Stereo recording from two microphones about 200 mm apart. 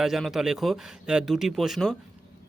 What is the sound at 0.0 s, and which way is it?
Speech, centre (ahead or behind).